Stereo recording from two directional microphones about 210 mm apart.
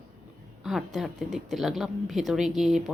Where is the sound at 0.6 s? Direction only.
Centre (ahead or behind).